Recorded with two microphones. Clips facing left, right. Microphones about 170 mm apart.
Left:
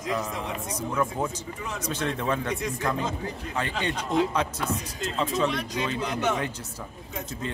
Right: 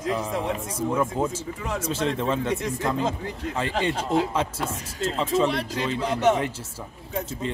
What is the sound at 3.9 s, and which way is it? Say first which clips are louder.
Speech: left 1 dB; 30° right (ahead or behind).